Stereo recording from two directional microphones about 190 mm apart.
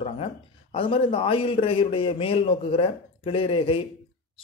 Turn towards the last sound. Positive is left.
turn(degrees=30)  # may be behind; listen again after turning